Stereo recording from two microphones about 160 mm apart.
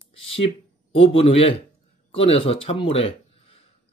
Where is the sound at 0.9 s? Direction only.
35° left (ahead or behind).